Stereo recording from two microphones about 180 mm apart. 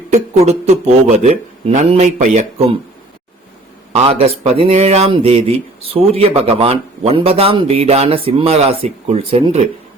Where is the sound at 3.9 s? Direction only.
30° right (ahead or behind).